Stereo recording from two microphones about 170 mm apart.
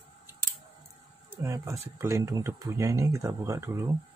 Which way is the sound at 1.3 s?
15° right (ahead or behind).